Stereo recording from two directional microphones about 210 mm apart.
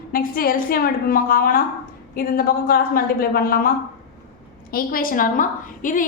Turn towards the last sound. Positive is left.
turn(degrees=40)  # may be behind; listen again after turning